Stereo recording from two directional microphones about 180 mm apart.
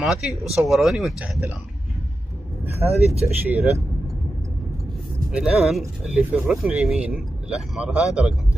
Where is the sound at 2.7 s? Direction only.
35° right (ahead or behind).